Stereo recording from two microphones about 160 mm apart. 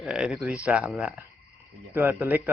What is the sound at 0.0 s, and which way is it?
Speech, 5° right (ahead or behind).